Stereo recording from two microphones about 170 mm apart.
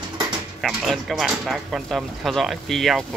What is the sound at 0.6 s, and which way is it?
Speech, centre (ahead or behind).